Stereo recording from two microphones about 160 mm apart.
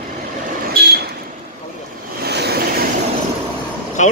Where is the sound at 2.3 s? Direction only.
90° right.